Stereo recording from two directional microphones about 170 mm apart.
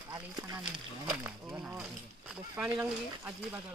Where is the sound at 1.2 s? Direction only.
5° right (ahead or behind).